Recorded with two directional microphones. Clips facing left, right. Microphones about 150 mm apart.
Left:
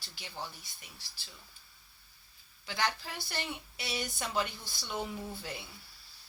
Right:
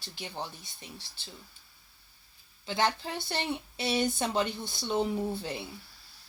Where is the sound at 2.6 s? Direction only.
25° right (ahead or behind).